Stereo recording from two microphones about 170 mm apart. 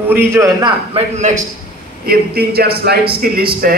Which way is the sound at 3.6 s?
60° right (ahead or behind).